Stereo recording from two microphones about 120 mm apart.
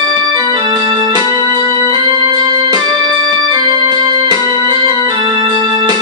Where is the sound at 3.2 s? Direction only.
35° right (ahead or behind).